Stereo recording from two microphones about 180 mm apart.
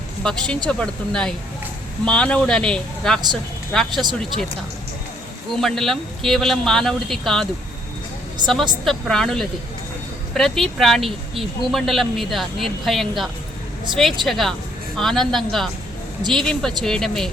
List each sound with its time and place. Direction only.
0.2 s speech: 5° left (ahead or behind)
5.5 s speech: centre (ahead or behind)
8.8 s speech: centre (ahead or behind)